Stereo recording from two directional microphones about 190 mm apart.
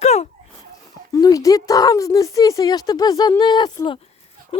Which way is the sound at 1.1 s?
15° left (ahead or behind).